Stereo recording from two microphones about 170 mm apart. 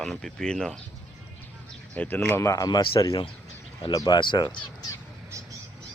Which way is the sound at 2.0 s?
10° left (ahead or behind).